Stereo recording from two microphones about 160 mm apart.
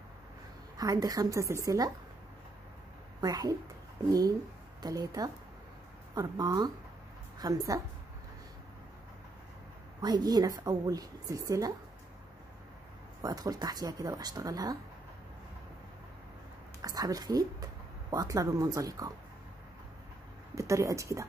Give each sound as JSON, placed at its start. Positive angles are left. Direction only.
{"t": 0.7, "sound": "a woman's voice", "side_deg": -25}
{"t": 3.2, "sound": "speech", "side_deg": -25}
{"t": 4.8, "sound": "a woman's voice", "side_deg": -25}
{"t": 10.0, "sound": "a woman's voice", "side_deg": -25}
{"t": 13.2, "sound": "a woman's voice", "side_deg": -25}
{"t": 16.8, "sound": "a woman's voice", "side_deg": -25}
{"t": 20.5, "sound": "a woman's voice", "side_deg": -20}